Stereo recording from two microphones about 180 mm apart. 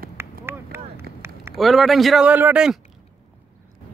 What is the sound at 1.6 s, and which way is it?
A man's voice, centre (ahead or behind).